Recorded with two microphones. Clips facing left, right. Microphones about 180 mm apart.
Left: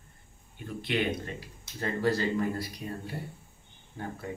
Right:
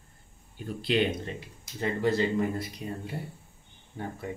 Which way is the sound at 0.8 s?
30° right (ahead or behind).